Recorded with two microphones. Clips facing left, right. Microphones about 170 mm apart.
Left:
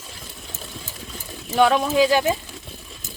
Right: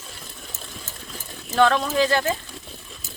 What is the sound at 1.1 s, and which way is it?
Speech, 10° left (ahead or behind).